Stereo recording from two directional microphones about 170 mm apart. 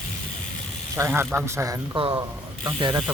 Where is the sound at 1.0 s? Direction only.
15° right (ahead or behind).